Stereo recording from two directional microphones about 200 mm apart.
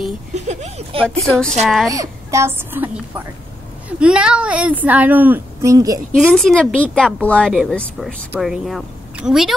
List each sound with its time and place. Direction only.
0.3 s a sound: 35° right (ahead or behind)
1.0 s a woman's voice: 5° left (ahead or behind)
1.9 s speech: 15° right (ahead or behind)
6.1 s a woman's voice: centre (ahead or behind)